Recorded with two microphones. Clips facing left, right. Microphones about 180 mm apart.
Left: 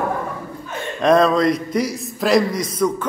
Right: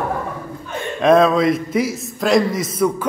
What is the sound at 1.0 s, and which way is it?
A man's voice, centre (ahead or behind).